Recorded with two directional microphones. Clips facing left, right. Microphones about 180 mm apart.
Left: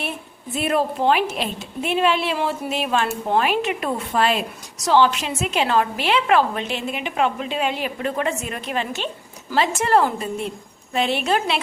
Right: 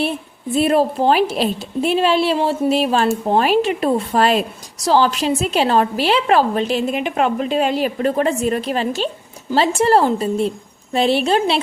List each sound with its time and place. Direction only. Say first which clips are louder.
0.5 s a woman's voice: right 6 dB; 35° right (ahead or behind)